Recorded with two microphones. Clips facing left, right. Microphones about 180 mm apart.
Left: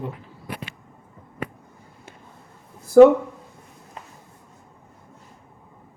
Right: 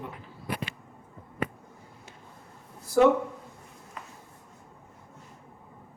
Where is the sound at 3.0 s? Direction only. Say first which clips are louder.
Left 10 dB; 55° left (ahead or behind).